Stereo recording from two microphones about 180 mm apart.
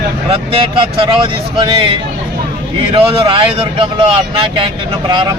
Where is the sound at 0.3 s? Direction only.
30° right (ahead or behind).